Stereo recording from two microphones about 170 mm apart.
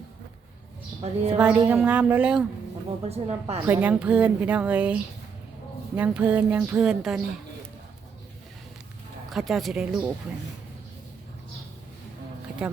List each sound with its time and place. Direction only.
1.0 s a woman's voice: 40° right (ahead or behind)
1.4 s speech: 10° right (ahead or behind)
3.0 s a woman's voice: 35° right (ahead or behind)
3.7 s speech: 10° right (ahead or behind)
6.0 s speech: 5° right (ahead or behind)
9.3 s speech: centre (ahead or behind)
12.6 s speech: 5° right (ahead or behind)